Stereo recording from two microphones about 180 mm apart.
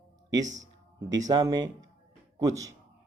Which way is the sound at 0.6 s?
20° right (ahead or behind).